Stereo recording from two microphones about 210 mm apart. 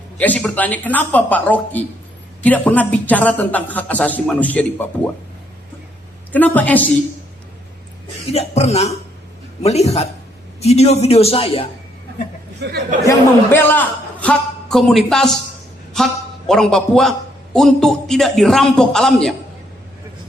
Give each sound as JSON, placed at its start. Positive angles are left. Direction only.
{"t": 0.2, "sound": "speech", "side_deg": 5}
{"t": 6.3, "sound": "speech", "side_deg": 10}
{"t": 8.3, "sound": "a man's voice", "side_deg": 30}
{"t": 13.1, "sound": "a man's voice", "side_deg": 10}